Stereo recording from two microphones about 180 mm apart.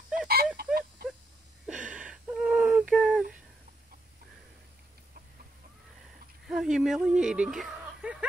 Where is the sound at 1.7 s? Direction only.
5° right (ahead or behind).